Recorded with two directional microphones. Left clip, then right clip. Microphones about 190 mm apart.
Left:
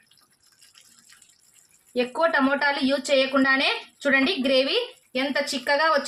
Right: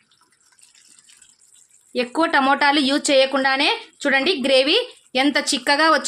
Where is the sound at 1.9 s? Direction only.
65° right (ahead or behind).